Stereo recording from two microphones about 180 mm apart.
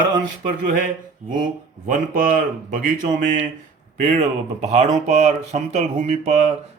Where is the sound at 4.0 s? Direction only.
40° right (ahead or behind).